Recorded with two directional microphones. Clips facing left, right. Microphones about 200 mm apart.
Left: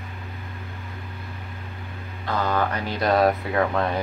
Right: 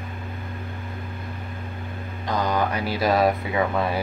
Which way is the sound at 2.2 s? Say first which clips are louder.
Even; 15° right (ahead or behind).